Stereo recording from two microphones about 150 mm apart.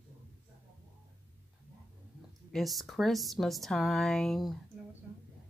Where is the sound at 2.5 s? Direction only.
Centre (ahead or behind).